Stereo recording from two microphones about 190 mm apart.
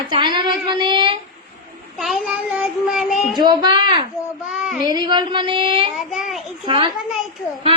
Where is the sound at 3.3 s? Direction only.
25° right (ahead or behind).